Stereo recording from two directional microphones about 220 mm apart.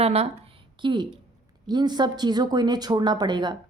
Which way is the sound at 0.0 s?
30° right (ahead or behind).